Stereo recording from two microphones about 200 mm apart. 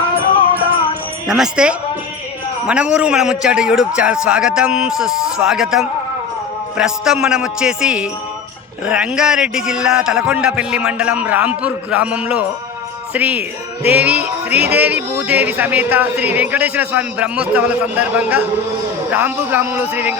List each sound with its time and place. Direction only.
1.3 s a man's voice: 5° right (ahead or behind)